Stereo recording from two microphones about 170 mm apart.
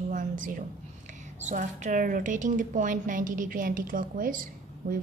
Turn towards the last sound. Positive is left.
turn(degrees=-50)  # may be behind; listen again after turning